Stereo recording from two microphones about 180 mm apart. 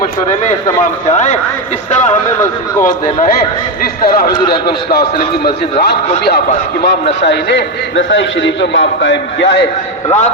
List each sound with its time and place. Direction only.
1.1 s a man's voice: 40° left (ahead or behind)
2.8 s a man's voice: 50° left (ahead or behind)
4.4 s a man's voice: 25° left (ahead or behind)
5.8 s a man's voice: 60° left (ahead or behind); by 9.6 s 80° left